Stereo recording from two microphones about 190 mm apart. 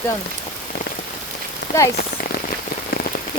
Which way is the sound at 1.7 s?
45° left (ahead or behind).